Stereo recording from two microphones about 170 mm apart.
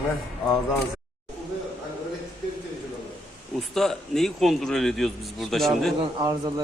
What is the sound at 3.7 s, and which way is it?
A man's voice, centre (ahead or behind).